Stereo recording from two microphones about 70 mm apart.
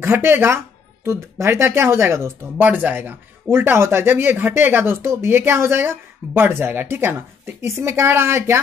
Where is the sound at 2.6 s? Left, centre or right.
Right.